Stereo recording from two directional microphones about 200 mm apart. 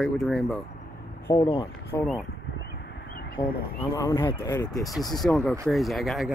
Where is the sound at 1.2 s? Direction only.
10° left (ahead or behind).